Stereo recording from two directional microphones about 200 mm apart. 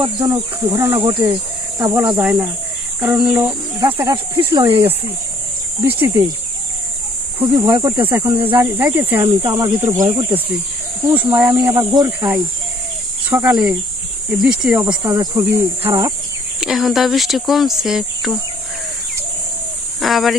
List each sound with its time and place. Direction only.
0.3 s speech: 15° right (ahead or behind)
3.8 s speech: 25° right (ahead or behind)
7.5 s speech: 20° right (ahead or behind)
9.2 s speech: 20° right (ahead or behind)
16.6 s speech: centre (ahead or behind)
20.0 s speech: centre (ahead or behind)